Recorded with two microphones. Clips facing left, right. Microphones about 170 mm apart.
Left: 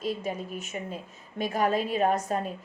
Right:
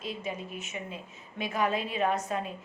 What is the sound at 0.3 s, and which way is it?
A woman's voice, 40° left (ahead or behind).